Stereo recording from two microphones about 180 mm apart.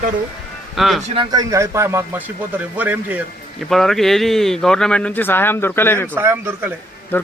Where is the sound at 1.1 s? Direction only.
25° right (ahead or behind); by 3.2 s 10° right (ahead or behind).